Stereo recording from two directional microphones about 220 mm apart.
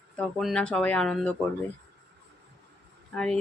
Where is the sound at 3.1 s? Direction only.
5° left (ahead or behind).